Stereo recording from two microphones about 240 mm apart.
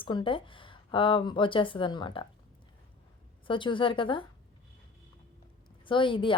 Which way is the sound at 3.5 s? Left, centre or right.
Left.